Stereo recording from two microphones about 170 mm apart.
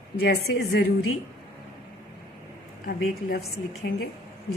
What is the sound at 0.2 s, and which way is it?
Speech, 90° left.